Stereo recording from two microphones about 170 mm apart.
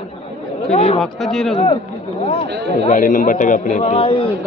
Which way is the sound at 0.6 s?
40° left (ahead or behind).